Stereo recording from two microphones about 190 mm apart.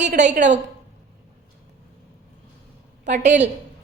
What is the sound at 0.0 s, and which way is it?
Speech, 40° right (ahead or behind).